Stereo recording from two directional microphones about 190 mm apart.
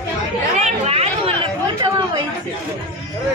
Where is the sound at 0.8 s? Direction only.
30° right (ahead or behind).